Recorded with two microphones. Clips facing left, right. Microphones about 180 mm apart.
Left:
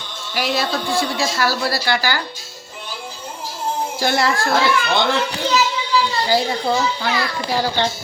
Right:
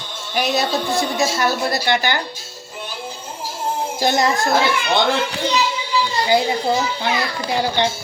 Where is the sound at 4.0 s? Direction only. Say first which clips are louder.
Right 2 dB; 20° right (ahead or behind).